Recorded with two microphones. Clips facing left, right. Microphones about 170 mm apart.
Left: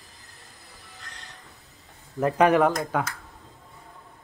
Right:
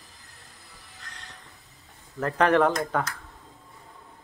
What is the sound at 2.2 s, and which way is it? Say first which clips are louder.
Speech: left 2 dB; 10° left (ahead or behind).